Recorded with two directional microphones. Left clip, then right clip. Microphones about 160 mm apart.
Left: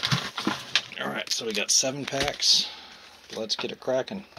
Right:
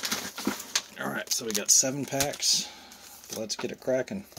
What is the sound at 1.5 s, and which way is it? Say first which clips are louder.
Speech: even; 60° right (ahead or behind).